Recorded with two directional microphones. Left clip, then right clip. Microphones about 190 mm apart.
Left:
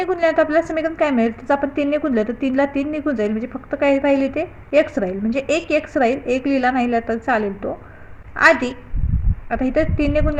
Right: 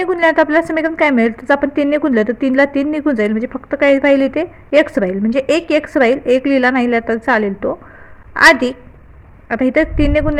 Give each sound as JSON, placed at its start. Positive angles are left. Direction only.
{"t": 0.0, "sound": "a woman's voice", "side_deg": -50}